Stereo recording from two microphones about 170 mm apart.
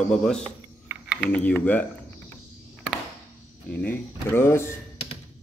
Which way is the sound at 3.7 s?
10° left (ahead or behind).